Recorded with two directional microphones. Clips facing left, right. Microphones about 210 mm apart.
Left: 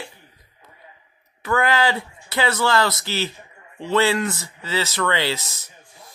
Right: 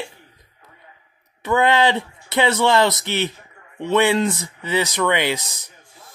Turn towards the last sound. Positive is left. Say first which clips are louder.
# right 2 dB
turn(degrees=-15)  # may be behind; listen again after turning